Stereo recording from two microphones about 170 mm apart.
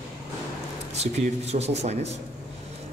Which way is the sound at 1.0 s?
40° right (ahead or behind).